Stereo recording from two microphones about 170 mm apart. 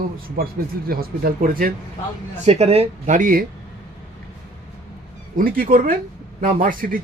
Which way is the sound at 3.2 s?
50° right (ahead or behind).